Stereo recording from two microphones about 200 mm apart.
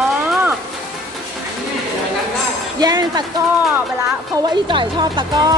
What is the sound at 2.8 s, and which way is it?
Speech, 20° right (ahead or behind).